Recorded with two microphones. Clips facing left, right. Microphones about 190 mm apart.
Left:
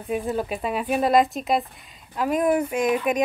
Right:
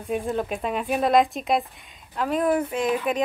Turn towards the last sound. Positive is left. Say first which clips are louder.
# left 2 dB
turn(degrees=15)  # may be behind; listen again after turning